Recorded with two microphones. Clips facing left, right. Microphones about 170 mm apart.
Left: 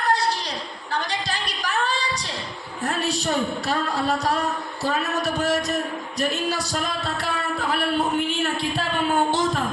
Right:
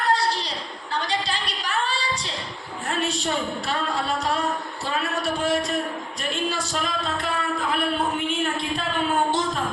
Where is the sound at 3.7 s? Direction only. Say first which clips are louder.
Left 2 dB; 40° left (ahead or behind).